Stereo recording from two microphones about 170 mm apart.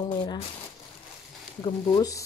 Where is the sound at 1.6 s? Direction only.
25° left (ahead or behind).